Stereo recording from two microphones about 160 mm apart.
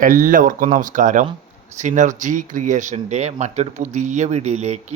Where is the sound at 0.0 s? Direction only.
60° right (ahead or behind).